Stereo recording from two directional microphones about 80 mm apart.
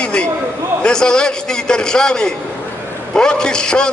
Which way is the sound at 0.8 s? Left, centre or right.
Centre.